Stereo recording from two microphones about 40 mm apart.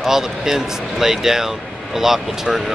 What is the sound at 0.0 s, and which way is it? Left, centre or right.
Speech, centre.